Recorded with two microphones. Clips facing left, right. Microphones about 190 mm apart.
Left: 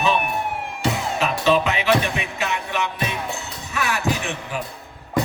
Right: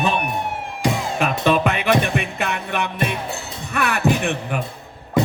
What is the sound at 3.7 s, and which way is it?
Speech, 60° right (ahead or behind).